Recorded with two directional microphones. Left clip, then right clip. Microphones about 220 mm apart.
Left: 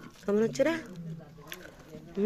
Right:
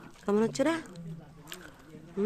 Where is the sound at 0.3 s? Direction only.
10° right (ahead or behind).